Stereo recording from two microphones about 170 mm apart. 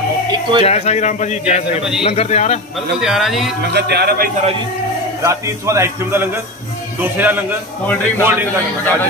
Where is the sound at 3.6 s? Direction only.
75° right (ahead or behind).